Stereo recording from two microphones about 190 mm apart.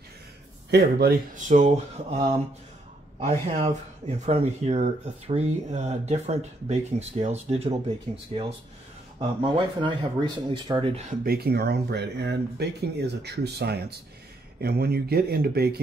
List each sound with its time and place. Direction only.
0.7 s speech: 60° right (ahead or behind); by 2.1 s 40° right (ahead or behind)
3.2 s speech: 35° right (ahead or behind)
11.1 s speech: 55° right (ahead or behind)